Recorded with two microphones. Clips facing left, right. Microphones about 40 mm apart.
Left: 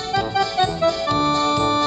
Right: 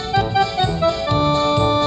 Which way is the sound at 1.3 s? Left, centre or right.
Right.